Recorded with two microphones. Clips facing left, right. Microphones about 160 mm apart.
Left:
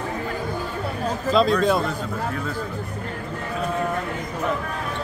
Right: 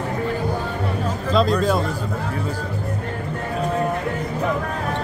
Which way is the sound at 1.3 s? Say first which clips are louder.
Even; centre (ahead or behind).